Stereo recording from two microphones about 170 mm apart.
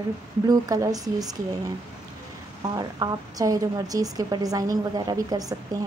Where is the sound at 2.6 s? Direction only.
25° right (ahead or behind).